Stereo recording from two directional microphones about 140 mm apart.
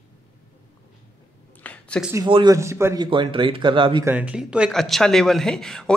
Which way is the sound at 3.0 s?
35° right (ahead or behind).